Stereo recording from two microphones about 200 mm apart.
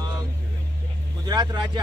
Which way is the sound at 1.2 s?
20° right (ahead or behind).